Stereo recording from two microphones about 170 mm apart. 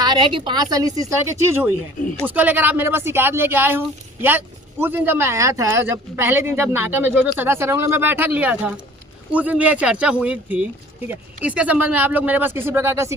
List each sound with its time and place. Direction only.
0.0 s speech: 25° right (ahead or behind)